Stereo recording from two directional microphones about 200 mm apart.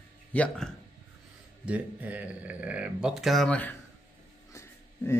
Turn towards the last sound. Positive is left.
turn(degrees=15)  # may be behind; listen again after turning